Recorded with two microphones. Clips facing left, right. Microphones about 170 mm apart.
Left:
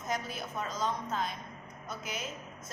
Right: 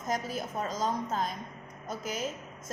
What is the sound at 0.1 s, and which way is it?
A woman's voice, 45° right (ahead or behind).